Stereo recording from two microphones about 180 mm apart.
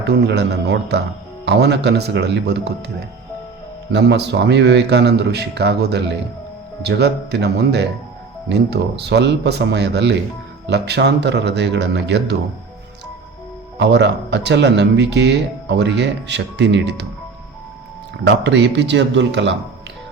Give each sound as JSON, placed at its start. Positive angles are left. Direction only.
{"t": 0.0, "sound": "speech", "side_deg": -70}
{"t": 3.9, "sound": "speech", "side_deg": -70}
{"t": 13.7, "sound": "speech", "side_deg": -75}
{"t": 18.3, "sound": "a man's voice", "side_deg": -75}